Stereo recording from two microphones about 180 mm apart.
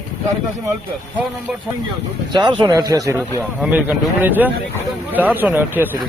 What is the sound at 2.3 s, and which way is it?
Speech, 25° right (ahead or behind).